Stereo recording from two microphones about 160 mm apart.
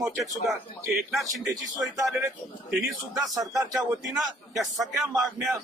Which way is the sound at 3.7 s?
Centre (ahead or behind).